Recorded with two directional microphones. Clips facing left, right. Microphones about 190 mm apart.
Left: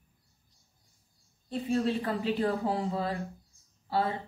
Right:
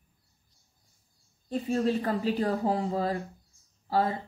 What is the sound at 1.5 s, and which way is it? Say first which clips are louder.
Speech: right 2 dB; 40° right (ahead or behind).